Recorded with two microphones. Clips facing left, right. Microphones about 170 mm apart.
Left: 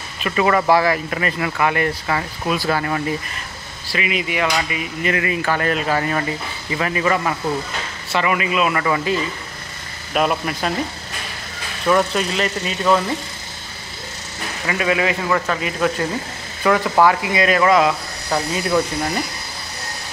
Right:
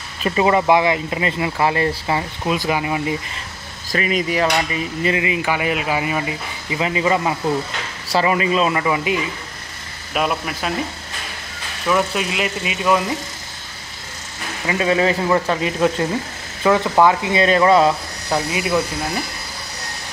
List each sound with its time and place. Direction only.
0.2 s speech: 25° right (ahead or behind)
3.9 s hammer: 40° right (ahead or behind)
5.1 s speech: 15° right (ahead or behind)
8.1 s speech: 30° right (ahead or behind); by 9.3 s 15° right (ahead or behind)
10.1 s speech: centre (ahead or behind)
11.9 s speech: 5° right (ahead or behind)
14.7 s hammer: 30° right (ahead or behind)
15.2 s speech: 20° right (ahead or behind)
18.3 s speech: 10° right (ahead or behind)